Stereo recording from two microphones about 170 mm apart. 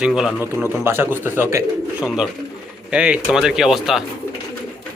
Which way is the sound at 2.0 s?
Centre (ahead or behind).